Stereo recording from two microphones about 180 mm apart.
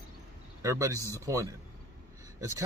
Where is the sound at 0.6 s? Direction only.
15° right (ahead or behind).